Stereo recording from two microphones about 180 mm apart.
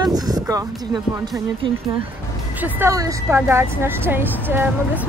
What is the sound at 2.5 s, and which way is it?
Speech, 10° right (ahead or behind).